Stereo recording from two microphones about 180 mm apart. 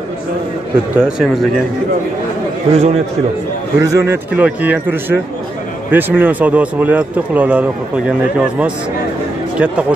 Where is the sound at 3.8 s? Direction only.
15° right (ahead or behind).